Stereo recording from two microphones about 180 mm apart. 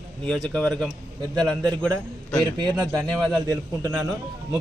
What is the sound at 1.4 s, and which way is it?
Speech, 20° right (ahead or behind).